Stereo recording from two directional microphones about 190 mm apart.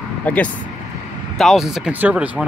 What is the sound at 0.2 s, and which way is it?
Speech, 10° left (ahead or behind).